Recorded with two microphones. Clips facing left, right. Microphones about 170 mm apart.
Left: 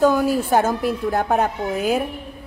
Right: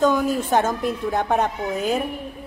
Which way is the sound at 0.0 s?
10° left (ahead or behind).